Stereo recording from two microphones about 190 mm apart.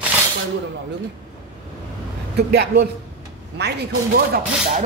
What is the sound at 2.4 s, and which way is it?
Speech, 60° right (ahead or behind).